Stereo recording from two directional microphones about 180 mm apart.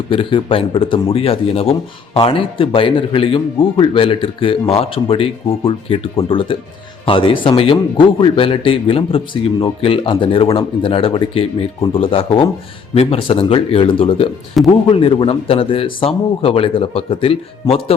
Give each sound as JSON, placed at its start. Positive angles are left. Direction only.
{"t": 0.1, "sound": "a man's voice", "side_deg": 30}